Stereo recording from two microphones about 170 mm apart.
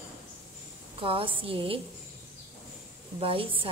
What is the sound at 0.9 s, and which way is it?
Speech, 30° right (ahead or behind).